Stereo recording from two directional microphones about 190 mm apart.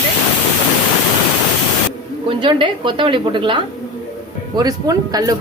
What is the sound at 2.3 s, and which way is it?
Speech, 25° right (ahead or behind).